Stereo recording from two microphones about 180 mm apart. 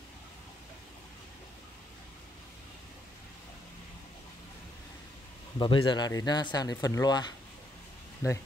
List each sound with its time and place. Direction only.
5.6 s speech: 25° left (ahead or behind)